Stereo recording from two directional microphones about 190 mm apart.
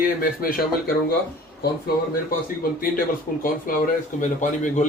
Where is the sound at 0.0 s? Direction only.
50° left (ahead or behind).